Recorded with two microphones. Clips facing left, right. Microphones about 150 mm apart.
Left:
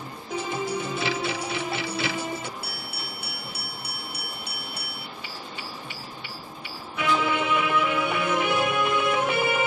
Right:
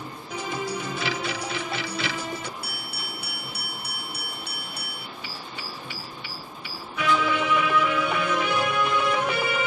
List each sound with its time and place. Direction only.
0.4 s music: 25° left (ahead or behind)
7.0 s music: 25° left (ahead or behind)